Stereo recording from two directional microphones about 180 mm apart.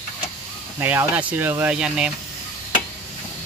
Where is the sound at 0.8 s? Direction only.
10° right (ahead or behind).